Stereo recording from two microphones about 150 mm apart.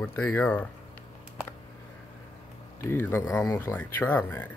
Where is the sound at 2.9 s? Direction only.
15° left (ahead or behind).